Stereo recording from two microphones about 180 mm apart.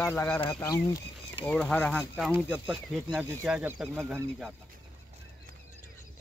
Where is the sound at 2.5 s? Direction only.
10° right (ahead or behind).